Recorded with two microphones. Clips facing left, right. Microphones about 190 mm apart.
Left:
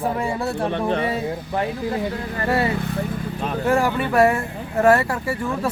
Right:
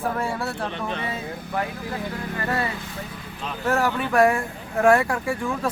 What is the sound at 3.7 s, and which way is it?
Speech, 10° left (ahead or behind).